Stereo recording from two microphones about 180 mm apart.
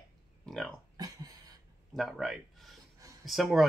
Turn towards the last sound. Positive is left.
turn(degrees=0)  # may be behind; listen again after turning